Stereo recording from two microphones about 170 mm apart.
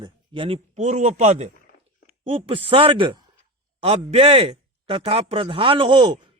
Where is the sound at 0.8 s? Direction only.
45° right (ahead or behind).